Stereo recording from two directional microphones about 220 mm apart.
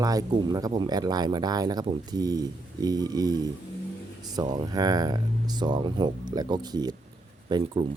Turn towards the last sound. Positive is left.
turn(degrees=-25)  # may be behind; listen again after turning